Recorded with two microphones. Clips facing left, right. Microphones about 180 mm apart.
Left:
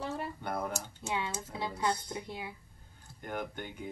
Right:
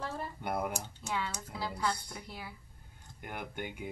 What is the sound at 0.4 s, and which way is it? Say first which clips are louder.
Speech: right 1 dB; 10° right (ahead or behind).